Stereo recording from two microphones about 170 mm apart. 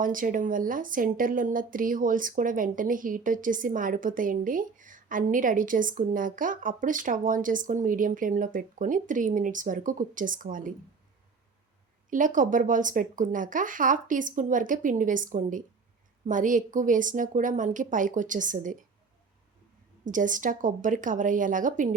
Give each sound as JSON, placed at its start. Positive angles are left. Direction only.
{"t": 0.0, "sound": "speech", "side_deg": -55}
{"t": 12.1, "sound": "speech", "side_deg": -50}
{"t": 20.1, "sound": "speech", "side_deg": -50}